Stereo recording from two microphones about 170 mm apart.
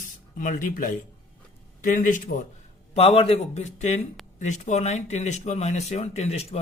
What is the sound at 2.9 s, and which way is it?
Speech, 35° left (ahead or behind).